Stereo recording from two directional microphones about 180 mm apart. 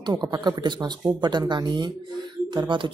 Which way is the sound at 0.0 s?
25° right (ahead or behind).